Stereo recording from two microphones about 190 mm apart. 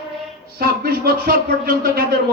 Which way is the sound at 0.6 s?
50° right (ahead or behind).